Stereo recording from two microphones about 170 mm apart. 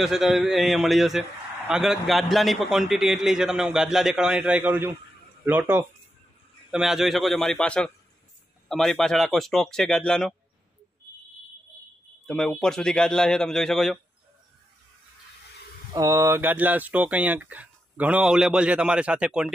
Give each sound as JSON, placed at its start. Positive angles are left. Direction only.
{"t": 0.0, "sound": "a man's voice", "side_deg": 0}
{"t": 12.3, "sound": "a man's voice", "side_deg": 5}
{"t": 15.9, "sound": "speech", "side_deg": -20}